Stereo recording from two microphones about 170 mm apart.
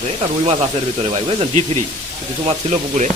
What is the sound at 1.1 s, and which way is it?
Speech, 35° right (ahead or behind).